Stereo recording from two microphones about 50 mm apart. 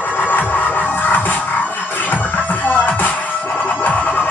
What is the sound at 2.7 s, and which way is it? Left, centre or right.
Music, left.